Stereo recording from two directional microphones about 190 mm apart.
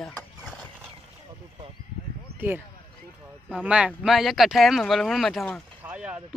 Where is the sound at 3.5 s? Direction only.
5° right (ahead or behind).